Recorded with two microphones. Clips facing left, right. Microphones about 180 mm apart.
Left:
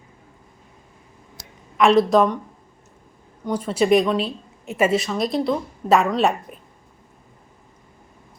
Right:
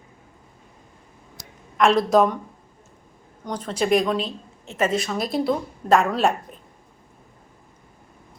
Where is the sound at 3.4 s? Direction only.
10° left (ahead or behind).